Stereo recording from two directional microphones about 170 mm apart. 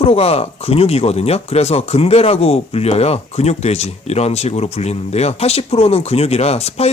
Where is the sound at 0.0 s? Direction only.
35° left (ahead or behind).